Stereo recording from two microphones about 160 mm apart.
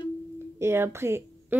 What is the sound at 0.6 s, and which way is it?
Speech, 15° right (ahead or behind).